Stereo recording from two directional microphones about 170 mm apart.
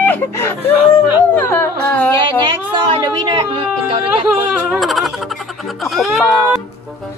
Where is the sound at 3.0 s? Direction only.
25° right (ahead or behind).